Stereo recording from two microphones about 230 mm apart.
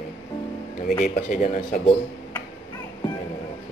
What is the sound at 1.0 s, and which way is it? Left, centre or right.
Speech, left.